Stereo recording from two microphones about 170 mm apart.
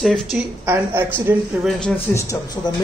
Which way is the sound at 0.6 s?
15° right (ahead or behind).